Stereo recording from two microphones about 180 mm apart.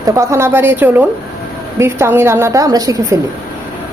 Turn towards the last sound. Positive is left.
turn(degrees=-20)  # may be behind; listen again after turning